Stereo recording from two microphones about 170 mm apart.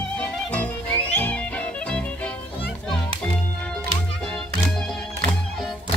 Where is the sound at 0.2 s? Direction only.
10° left (ahead or behind).